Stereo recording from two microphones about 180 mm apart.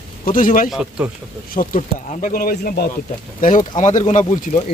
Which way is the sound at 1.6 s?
35° left (ahead or behind).